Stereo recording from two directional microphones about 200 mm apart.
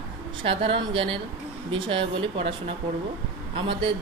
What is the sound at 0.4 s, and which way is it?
Speech, 25° right (ahead or behind).